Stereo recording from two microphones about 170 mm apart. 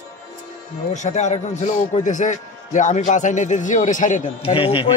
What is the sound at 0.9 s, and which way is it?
A man's voice, 45° left (ahead or behind).